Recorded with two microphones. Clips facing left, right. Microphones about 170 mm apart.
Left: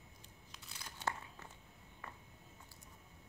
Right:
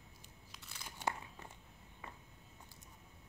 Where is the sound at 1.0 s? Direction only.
15° right (ahead or behind).